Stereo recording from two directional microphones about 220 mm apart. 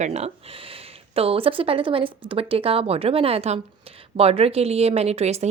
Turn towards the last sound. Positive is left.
turn(degrees=-30)  # may be behind; listen again after turning